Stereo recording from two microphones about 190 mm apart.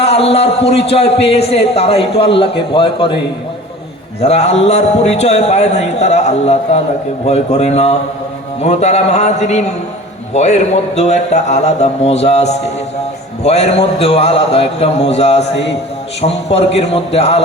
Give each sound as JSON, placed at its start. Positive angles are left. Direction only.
{"t": 0.0, "sound": "a man's voice", "side_deg": 30}
{"t": 4.2, "sound": "a man's voice", "side_deg": 35}